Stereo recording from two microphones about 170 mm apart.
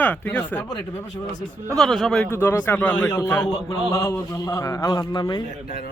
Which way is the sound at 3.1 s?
20° left (ahead or behind).